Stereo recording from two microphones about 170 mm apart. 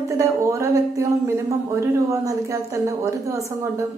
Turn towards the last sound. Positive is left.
turn(degrees=-20)  # may be behind; listen again after turning